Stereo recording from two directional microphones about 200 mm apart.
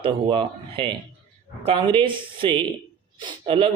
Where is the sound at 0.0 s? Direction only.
25° right (ahead or behind).